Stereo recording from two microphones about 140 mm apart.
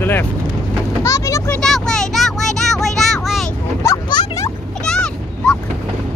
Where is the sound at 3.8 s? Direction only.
20° left (ahead or behind).